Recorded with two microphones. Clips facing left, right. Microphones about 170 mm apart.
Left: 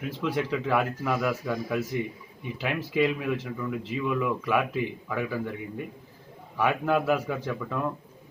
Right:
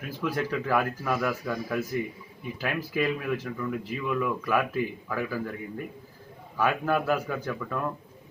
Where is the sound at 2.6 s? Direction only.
20° left (ahead or behind).